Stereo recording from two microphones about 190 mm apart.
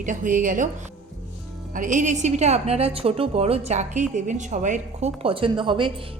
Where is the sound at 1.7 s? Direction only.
40° right (ahead or behind).